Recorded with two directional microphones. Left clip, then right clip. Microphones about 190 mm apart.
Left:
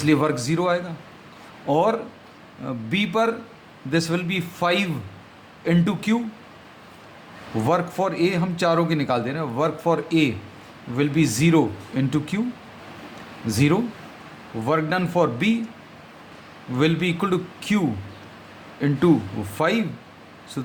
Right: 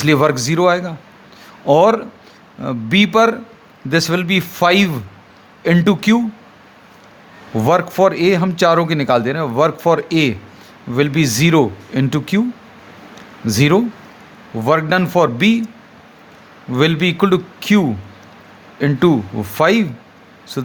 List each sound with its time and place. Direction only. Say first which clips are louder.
0.0 s a man's voice: right 7 dB; 50° right (ahead or behind)
7.5 s a man's voice: right 8 dB; 40° right (ahead or behind)
13.5 s a man's voice: right 7 dB; 45° right (ahead or behind)
16.7 s a man's voice: right 7 dB; 45° right (ahead or behind)